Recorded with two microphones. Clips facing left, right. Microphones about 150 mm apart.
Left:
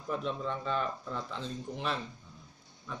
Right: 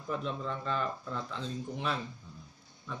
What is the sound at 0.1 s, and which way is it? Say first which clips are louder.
Speech: left 1 dB; centre (ahead or behind).